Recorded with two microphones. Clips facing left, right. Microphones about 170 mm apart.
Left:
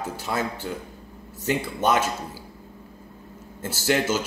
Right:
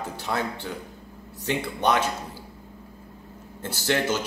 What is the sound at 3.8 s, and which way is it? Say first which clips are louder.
Speech: left 2 dB; 5° left (ahead or behind).